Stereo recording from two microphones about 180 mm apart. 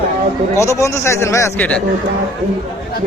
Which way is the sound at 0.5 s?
15° left (ahead or behind).